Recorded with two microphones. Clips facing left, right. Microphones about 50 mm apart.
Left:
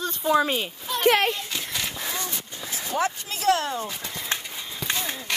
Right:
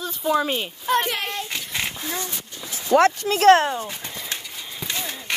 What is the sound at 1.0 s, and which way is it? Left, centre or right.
Speech, left.